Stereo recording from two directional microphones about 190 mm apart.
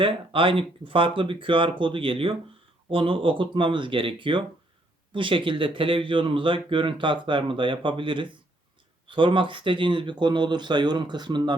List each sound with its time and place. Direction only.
0.0 s speech: 30° right (ahead or behind)